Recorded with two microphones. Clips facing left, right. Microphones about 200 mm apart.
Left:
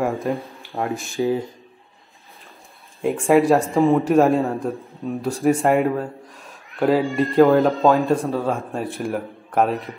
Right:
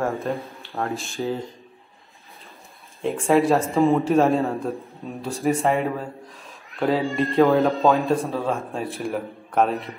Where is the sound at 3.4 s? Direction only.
10° left (ahead or behind).